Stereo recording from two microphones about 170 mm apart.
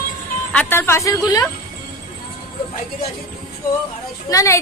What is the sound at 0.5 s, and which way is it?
Speech, 10° left (ahead or behind).